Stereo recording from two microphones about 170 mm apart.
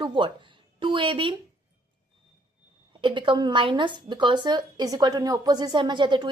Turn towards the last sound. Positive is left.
turn(degrees=-25)  # may be behind; listen again after turning